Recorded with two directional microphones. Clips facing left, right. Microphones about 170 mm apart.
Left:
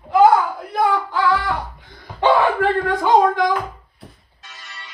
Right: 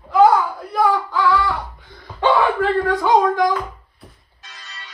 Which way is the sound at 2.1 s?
15° left (ahead or behind).